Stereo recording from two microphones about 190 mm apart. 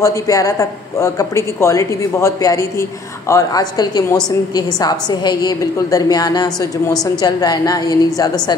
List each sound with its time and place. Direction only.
0.0 s a woman's voice: 15° left (ahead or behind)